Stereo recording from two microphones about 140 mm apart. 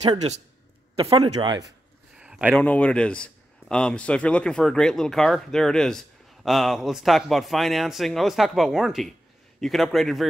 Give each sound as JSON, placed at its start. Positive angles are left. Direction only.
{"t": 0.2, "sound": "speech", "side_deg": -45}
{"t": 1.1, "sound": "speech", "side_deg": -35}
{"t": 2.1, "sound": "a sound", "side_deg": -10}
{"t": 2.6, "sound": "a man's voice", "side_deg": 10}